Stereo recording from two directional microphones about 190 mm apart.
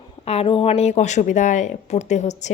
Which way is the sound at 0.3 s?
30° left (ahead or behind).